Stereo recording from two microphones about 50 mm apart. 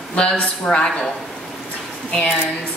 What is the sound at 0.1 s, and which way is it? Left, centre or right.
Speech, centre.